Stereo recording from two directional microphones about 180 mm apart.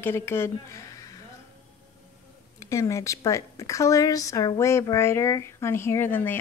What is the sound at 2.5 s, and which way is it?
Speech, 15° left (ahead or behind).